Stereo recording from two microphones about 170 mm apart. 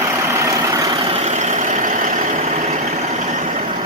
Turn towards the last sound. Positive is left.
turn(degrees=-45)  # may be behind; listen again after turning